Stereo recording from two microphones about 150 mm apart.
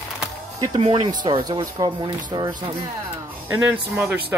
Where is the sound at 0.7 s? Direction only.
40° right (ahead or behind).